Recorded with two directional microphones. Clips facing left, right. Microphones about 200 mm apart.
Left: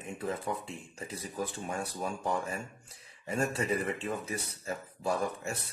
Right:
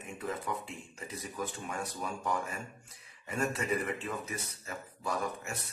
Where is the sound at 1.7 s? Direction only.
30° left (ahead or behind).